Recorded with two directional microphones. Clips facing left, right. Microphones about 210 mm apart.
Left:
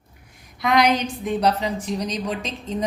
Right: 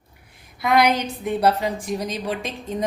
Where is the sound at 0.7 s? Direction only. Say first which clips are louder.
Even; 55° right (ahead or behind).